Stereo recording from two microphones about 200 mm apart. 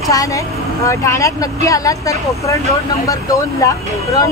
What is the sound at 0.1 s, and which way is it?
Speech, 15° left (ahead or behind).